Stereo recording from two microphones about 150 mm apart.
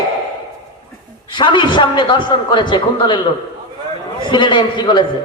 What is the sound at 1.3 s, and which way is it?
A man's voice, 30° left (ahead or behind).